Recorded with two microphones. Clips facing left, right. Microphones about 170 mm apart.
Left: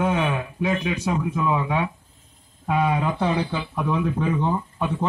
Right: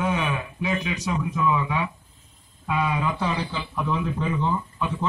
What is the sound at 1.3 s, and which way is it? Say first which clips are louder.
A man's voice: left 1 dB; 45° left (ahead or behind).